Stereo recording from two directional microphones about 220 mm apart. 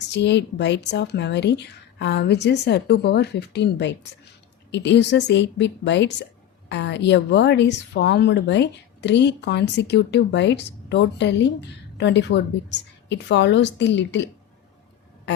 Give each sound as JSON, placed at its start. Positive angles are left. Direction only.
{"t": 0.1, "sound": "a woman's voice", "side_deg": 50}